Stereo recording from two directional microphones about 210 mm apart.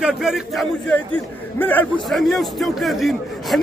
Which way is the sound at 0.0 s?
Centre (ahead or behind).